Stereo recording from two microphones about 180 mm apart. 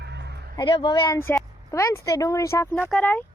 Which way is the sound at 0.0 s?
70° right (ahead or behind).